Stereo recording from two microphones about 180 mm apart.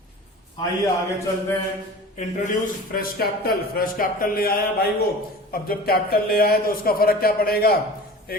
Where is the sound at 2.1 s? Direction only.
50° left (ahead or behind).